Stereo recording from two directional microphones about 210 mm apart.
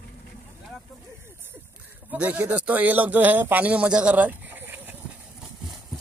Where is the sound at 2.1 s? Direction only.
5° right (ahead or behind).